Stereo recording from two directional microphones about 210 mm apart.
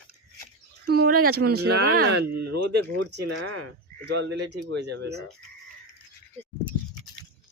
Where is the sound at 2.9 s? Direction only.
65° right (ahead or behind).